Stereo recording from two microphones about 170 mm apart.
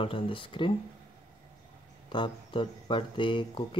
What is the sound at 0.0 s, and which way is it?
Speech, 30° left (ahead or behind).